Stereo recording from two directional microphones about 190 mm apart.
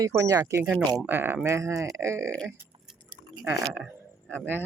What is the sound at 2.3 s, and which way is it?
Speech, 5° left (ahead or behind).